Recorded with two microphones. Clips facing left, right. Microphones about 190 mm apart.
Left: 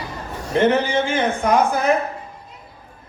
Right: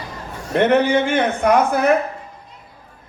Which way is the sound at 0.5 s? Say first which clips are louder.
Right 2 dB; 60° right (ahead or behind).